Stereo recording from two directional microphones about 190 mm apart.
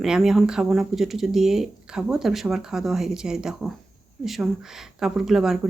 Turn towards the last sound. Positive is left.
turn(degrees=0)  # may be behind; listen again after turning